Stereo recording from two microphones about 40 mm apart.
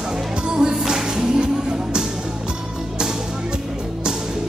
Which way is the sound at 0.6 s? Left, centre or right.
Centre.